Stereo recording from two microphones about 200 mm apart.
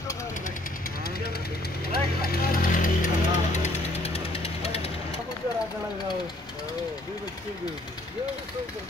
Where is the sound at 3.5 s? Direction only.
35° left (ahead or behind).